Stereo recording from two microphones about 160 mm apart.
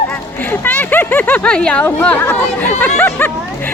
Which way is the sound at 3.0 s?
10° left (ahead or behind).